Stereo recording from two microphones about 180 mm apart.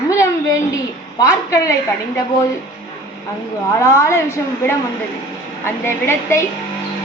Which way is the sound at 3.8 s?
15° left (ahead or behind).